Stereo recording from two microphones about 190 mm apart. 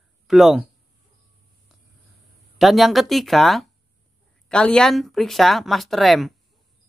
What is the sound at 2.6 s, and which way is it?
Speech, centre (ahead or behind).